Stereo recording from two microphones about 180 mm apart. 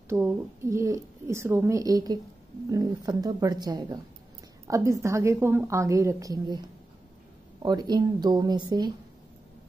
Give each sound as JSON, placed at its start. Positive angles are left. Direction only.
{"t": 0.1, "sound": "a woman's voice", "side_deg": -15}
{"t": 7.6, "sound": "a woman's voice", "side_deg": -25}